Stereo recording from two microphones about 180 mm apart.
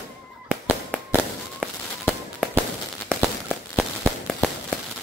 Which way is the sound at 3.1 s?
Centre (ahead or behind).